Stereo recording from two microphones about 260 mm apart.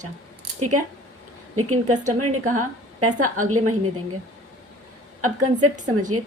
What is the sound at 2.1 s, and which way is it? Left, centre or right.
A woman's voice, right.